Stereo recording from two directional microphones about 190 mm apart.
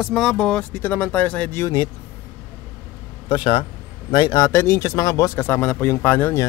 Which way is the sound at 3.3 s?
25° left (ahead or behind).